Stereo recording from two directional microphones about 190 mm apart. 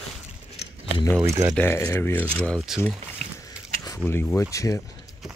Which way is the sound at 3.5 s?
15° left (ahead or behind).